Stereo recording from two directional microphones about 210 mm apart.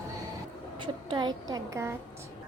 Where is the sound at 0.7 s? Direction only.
20° right (ahead or behind).